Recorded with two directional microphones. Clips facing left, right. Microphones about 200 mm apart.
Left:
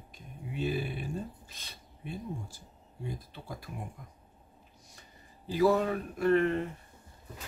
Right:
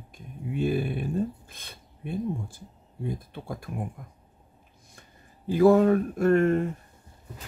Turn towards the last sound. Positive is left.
turn(degrees=-45)  # may be behind; listen again after turning